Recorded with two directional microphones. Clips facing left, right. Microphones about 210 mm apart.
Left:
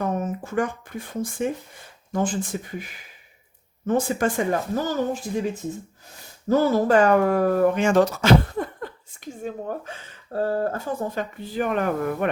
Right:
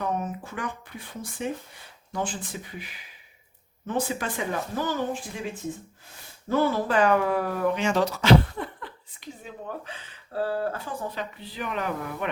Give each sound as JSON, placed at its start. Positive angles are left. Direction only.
{"t": 0.0, "sound": "speech", "side_deg": 45}
{"t": 6.5, "sound": "speech", "side_deg": 40}